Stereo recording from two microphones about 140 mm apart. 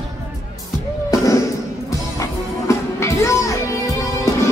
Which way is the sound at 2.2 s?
20° left (ahead or behind).